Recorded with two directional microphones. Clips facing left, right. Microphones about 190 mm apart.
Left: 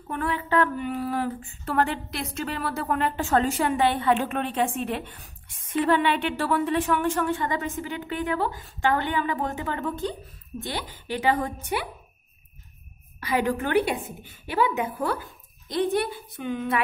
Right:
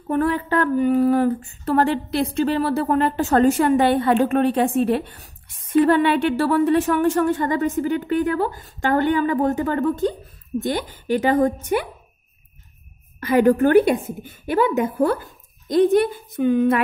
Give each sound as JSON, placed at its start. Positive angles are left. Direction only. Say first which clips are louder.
{"t": 0.1, "sound": "a woman's voice", "louder": "right 6 dB", "side_deg": -40}
{"t": 13.2, "sound": "a woman's voice", "louder": "right 10 dB", "side_deg": -45}